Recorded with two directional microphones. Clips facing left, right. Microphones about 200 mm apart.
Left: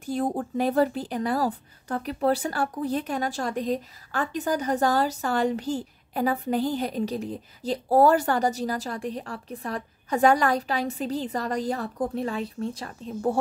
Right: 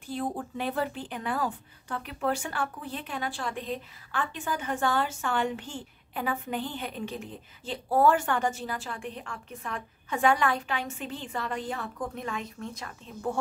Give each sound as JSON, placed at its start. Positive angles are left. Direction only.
{"t": 0.0, "sound": "speech", "side_deg": 45}